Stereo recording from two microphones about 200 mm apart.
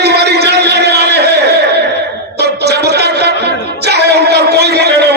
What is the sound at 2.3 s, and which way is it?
Music, 55° right (ahead or behind).